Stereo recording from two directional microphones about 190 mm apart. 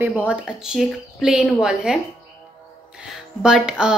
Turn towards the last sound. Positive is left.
turn(degrees=-5)  # may be behind; listen again after turning